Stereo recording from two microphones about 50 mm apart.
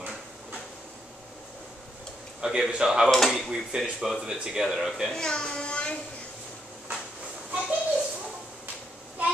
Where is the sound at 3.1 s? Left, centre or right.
Centre.